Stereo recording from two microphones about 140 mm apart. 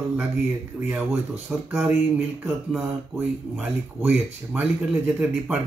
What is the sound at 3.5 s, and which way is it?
Speech, 15° right (ahead or behind).